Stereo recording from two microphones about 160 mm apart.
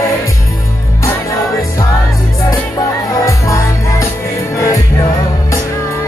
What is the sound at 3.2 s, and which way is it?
Music, 20° left (ahead or behind).